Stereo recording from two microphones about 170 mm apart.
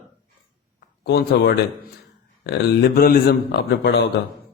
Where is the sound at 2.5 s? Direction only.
60° left (ahead or behind); by 4.0 s 85° left.